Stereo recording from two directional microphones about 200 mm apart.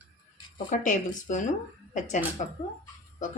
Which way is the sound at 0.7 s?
40° left (ahead or behind).